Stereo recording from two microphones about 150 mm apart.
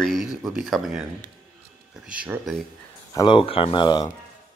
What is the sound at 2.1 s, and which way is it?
Speech, 10° right (ahead or behind).